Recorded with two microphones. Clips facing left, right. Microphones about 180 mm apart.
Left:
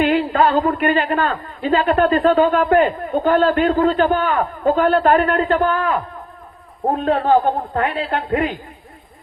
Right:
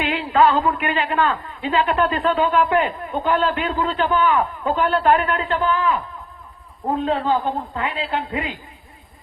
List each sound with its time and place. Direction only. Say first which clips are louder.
0.0 s a man's voice: left 2 dB; 45° left (ahead or behind)